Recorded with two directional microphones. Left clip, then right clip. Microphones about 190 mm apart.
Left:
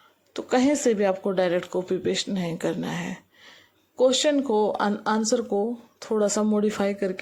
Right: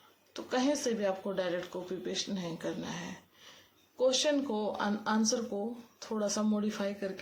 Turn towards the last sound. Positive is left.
turn(degrees=40)  # may be behind; listen again after turning